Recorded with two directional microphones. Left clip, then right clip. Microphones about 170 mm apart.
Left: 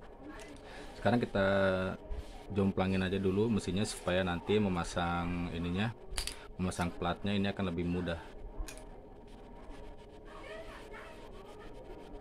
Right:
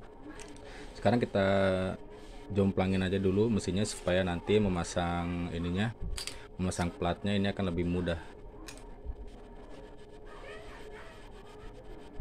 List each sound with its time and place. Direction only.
1.0 s speech: 15° right (ahead or behind)